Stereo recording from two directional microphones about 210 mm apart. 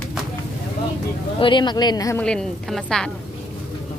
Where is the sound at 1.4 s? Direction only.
25° left (ahead or behind).